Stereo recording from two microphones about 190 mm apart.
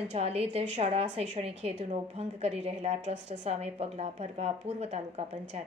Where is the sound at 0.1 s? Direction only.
30° right (ahead or behind).